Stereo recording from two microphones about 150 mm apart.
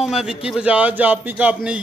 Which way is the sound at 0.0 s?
5° right (ahead or behind).